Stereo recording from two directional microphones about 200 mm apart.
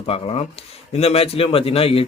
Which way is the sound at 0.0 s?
30° left (ahead or behind).